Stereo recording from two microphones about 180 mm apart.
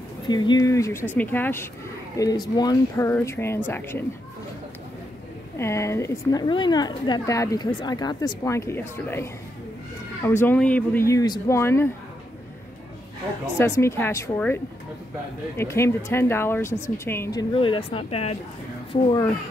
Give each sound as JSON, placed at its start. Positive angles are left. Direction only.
{"t": 0.3, "sound": "a woman's voice", "side_deg": 20}
{"t": 5.6, "sound": "a woman's voice", "side_deg": 15}
{"t": 13.6, "sound": "a woman's voice", "side_deg": 15}